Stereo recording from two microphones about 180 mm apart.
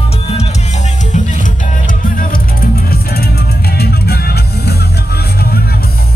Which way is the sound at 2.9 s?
60° left (ahead or behind).